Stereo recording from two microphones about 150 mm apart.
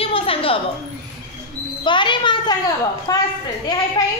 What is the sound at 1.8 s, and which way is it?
A child's voice, 30° left (ahead or behind).